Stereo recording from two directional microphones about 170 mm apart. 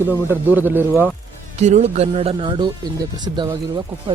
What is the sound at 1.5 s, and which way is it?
Speech, 40° right (ahead or behind).